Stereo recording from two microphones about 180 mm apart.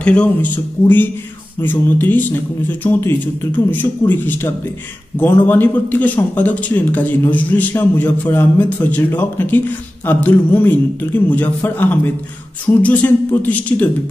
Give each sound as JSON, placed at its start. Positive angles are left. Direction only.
{"t": 0.0, "sound": "a man's voice", "side_deg": 5}